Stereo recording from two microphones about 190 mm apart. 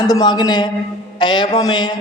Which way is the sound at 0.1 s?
20° left (ahead or behind).